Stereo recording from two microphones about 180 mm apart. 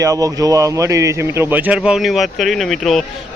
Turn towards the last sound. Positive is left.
turn(degrees=0)  # may be behind; listen again after turning